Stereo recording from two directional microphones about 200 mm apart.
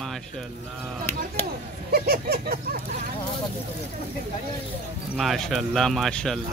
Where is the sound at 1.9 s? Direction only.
50° right (ahead or behind).